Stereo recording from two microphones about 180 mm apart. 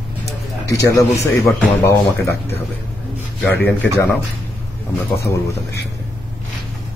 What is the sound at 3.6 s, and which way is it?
Speech, 10° left (ahead or behind).